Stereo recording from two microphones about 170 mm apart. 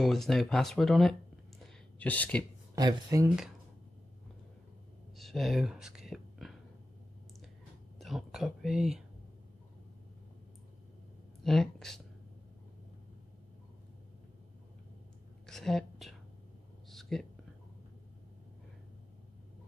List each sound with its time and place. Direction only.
0.0 s speech: centre (ahead or behind)
2.7 s speech: 20° right (ahead or behind)
5.1 s whispering: centre (ahead or behind)
8.0 s speech: centre (ahead or behind)
11.4 s speech: centre (ahead or behind)
15.4 s a sound: 5° left (ahead or behind)